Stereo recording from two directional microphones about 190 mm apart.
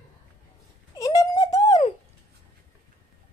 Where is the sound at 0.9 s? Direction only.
15° left (ahead or behind).